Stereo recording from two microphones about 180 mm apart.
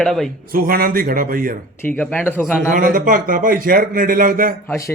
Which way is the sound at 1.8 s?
10° left (ahead or behind).